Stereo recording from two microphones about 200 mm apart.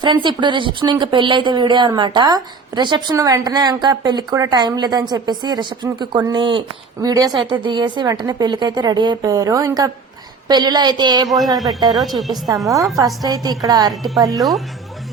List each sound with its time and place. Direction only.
0.0 s speech: 25° right (ahead or behind)
11.5 s speech: centre (ahead or behind)
13.2 s speech: 20° right (ahead or behind)